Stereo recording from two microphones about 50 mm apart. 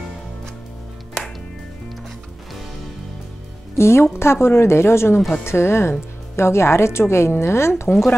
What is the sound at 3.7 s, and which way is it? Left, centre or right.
Speech, left.